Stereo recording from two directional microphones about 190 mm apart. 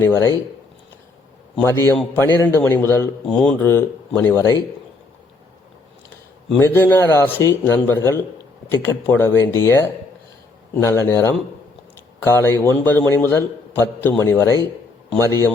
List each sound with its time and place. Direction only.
0.0 s speech: 15° left (ahead or behind)
1.5 s speech: 15° left (ahead or behind)
6.6 s speech: 10° left (ahead or behind)